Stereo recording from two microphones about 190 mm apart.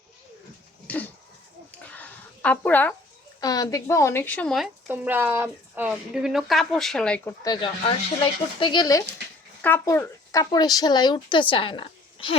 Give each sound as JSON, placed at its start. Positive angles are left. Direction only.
{"t": 0.9, "sound": "a sound", "side_deg": 10}
{"t": 3.4, "sound": "speech", "side_deg": 20}
{"t": 4.9, "sound": "speech", "side_deg": -10}
{"t": 7.4, "sound": "speech", "side_deg": 25}